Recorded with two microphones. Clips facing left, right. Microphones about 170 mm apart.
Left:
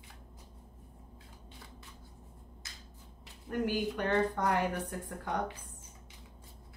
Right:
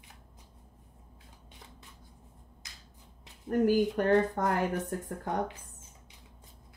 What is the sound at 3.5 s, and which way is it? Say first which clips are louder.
Speech: right 7 dB; 45° right (ahead or behind).